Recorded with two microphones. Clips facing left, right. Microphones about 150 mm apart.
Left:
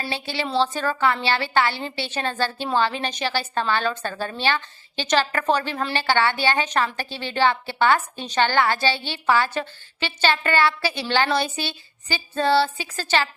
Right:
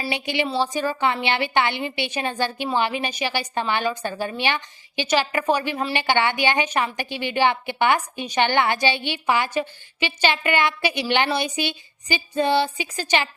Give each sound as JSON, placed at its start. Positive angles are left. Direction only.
{"t": 0.1, "sound": "a woman's voice", "side_deg": -20}